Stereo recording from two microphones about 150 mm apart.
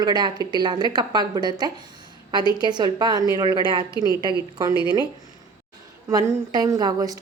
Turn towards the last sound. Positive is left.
turn(degrees=-25)  # may be behind; listen again after turning